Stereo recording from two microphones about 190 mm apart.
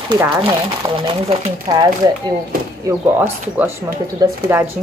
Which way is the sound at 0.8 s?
25° right (ahead or behind).